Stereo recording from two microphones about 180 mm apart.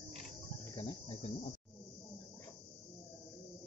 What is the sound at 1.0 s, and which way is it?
Speech, 40° left (ahead or behind).